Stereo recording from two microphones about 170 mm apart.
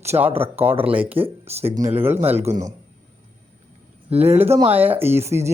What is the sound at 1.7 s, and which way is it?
Speech, 45° right (ahead or behind).